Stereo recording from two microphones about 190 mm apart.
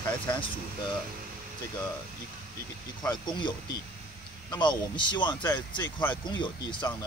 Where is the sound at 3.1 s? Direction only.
25° left (ahead or behind).